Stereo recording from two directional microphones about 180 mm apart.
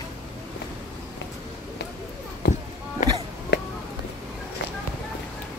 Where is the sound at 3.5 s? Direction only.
70° left (ahead or behind).